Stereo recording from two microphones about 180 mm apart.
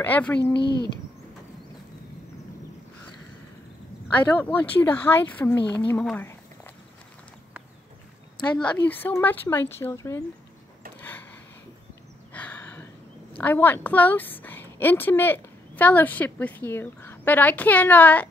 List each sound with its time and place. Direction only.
0.0 s a woman's voice: 10° left (ahead or behind)
0.4 s speech: 70° left (ahead or behind)
4.4 s a woman's voice: 10° left (ahead or behind)
5.9 s a sound: 5° left (ahead or behind)
8.4 s a woman's voice: 5° left (ahead or behind)
12.3 s a sound: 10° left (ahead or behind)
13.4 s a woman's voice: 10° left (ahead or behind)